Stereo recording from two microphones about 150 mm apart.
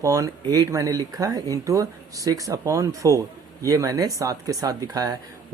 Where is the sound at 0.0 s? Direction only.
20° right (ahead or behind).